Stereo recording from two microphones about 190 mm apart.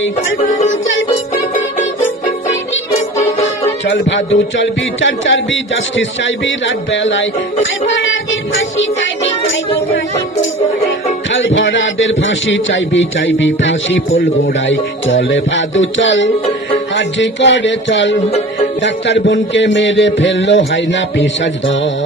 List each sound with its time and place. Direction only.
0.7 s speech: 85° left
3.8 s speech: 75° left (ahead or behind)
11.3 s speech: 85° left
16.9 s music: 70° left (ahead or behind)